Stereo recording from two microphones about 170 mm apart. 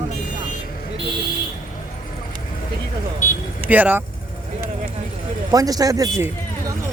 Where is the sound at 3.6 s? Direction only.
10° right (ahead or behind).